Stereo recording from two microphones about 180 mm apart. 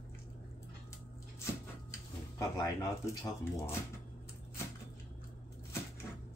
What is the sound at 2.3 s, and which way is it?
Speech, 20° left (ahead or behind).